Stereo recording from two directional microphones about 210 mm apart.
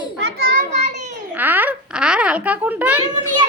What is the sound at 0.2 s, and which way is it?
Children playing, 50° right (ahead or behind).